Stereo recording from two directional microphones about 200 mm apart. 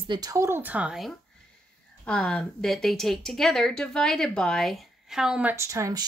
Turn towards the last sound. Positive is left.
turn(degrees=-15)  # may be behind; listen again after turning